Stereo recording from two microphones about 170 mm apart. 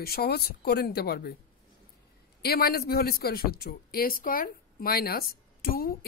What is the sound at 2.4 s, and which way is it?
Speech, 65° left (ahead or behind).